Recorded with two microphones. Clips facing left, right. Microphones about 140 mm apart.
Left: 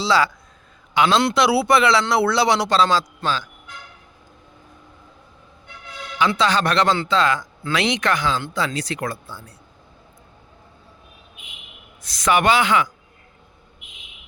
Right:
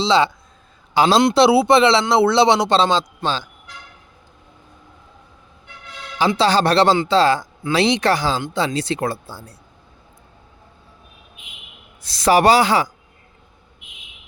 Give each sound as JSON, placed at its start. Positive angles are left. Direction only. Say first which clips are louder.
{"t": 0.0, "sound": "speech", "louder": "right 3 dB", "side_deg": -25}
{"t": 0.9, "sound": "a man's voice", "louder": "right 4 dB", "side_deg": -35}
{"t": 6.1, "sound": "a man's voice", "louder": "right 3 dB", "side_deg": -30}
{"t": 12.0, "sound": "speech", "louder": "right 4 dB", "side_deg": -30}